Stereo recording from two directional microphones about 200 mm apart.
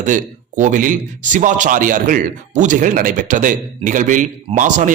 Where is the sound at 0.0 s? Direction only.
40° right (ahead or behind).